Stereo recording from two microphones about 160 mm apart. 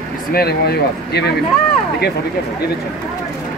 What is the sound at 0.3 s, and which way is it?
Speech, 80° left.